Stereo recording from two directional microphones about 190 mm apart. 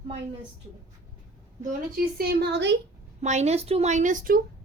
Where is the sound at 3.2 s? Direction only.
40° right (ahead or behind).